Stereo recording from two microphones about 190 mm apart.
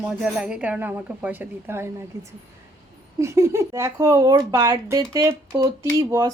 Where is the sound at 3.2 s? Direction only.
15° right (ahead or behind).